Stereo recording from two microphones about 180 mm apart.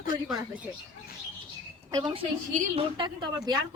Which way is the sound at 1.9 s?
25° right (ahead or behind).